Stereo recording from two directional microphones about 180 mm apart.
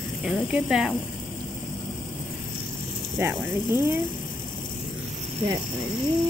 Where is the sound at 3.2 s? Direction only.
15° right (ahead or behind).